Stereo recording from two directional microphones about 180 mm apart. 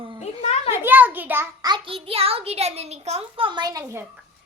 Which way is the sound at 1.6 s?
25° right (ahead or behind).